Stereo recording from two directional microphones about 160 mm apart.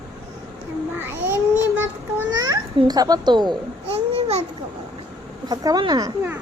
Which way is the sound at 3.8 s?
40° right (ahead or behind).